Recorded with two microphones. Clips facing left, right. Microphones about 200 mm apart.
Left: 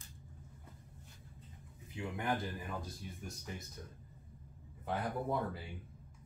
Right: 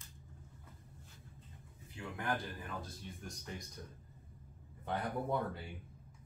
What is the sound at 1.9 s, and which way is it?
Speech, 20° left (ahead or behind).